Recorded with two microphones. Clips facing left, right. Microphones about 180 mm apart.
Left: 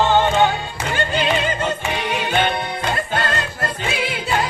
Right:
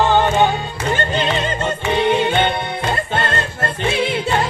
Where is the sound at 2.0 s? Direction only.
25° right (ahead or behind).